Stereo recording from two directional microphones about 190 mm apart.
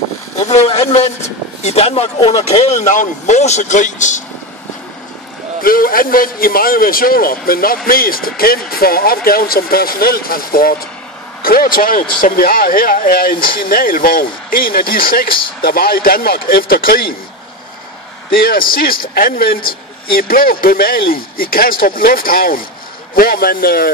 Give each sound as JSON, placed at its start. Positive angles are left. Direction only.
{"t": 0.5, "sound": "a man's voice", "side_deg": 35}
{"t": 5.6, "sound": "a man's voice", "side_deg": 50}
{"t": 18.3, "sound": "a man's voice", "side_deg": 50}